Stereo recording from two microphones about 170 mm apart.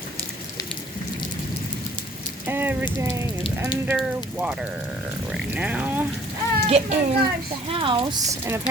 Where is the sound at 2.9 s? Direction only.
15° right (ahead or behind).